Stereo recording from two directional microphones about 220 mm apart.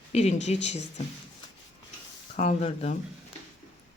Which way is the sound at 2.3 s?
30° left (ahead or behind).